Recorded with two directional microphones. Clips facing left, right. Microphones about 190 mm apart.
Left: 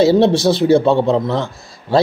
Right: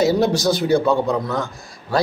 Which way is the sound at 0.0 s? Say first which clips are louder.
Left 5 dB; 30° left (ahead or behind).